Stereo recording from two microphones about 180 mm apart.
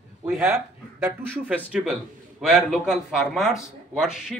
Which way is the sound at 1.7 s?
5° right (ahead or behind).